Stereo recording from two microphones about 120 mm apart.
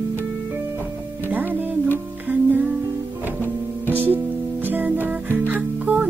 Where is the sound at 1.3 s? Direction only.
15° right (ahead or behind).